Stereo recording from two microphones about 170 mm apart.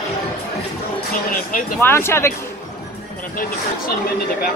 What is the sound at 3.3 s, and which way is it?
Speech, 55° left (ahead or behind).